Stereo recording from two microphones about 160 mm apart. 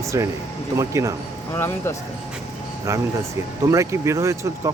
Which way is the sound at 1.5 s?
15° left (ahead or behind).